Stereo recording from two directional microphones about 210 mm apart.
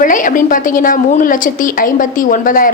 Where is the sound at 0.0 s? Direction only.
40° left (ahead or behind).